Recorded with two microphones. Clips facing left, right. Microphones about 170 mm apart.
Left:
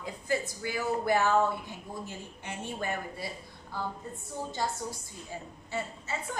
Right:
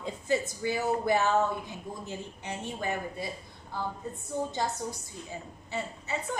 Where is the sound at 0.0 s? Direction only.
20° right (ahead or behind).